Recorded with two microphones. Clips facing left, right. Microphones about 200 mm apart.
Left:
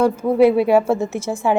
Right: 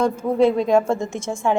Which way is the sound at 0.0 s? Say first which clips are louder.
Left 3 dB; 5° left (ahead or behind).